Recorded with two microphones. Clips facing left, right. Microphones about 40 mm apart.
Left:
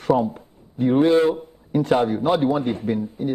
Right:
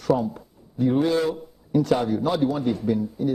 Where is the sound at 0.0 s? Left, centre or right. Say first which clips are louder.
Left 3 dB; left.